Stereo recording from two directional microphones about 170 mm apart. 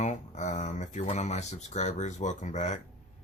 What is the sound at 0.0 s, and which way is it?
Speech, 45° left (ahead or behind).